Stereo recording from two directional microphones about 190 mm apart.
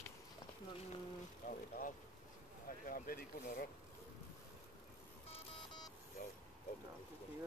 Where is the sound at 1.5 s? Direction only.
45° left (ahead or behind).